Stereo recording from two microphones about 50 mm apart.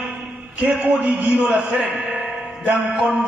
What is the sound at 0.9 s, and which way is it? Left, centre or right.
Speech, right.